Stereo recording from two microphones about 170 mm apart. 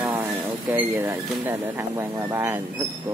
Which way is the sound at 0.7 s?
10° right (ahead or behind).